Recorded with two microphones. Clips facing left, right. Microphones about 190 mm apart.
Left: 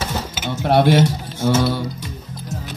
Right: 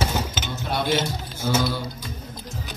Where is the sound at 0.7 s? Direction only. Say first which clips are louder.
Left 10 dB; 65° left (ahead or behind).